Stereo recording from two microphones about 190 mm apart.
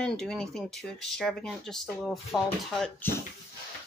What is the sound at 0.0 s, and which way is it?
Speech, 5° left (ahead or behind).